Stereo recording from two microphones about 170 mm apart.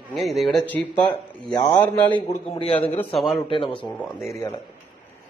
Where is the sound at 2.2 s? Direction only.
35° left (ahead or behind).